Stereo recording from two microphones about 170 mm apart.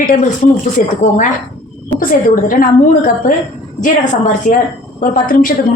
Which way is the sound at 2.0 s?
55° left (ahead or behind).